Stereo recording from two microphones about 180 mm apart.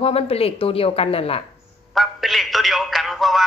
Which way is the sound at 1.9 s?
Centre (ahead or behind).